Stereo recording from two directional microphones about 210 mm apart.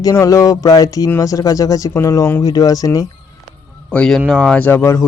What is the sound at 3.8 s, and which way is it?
A man's voice, 5° left (ahead or behind).